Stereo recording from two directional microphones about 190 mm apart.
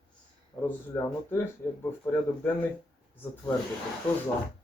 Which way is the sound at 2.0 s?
10° left (ahead or behind).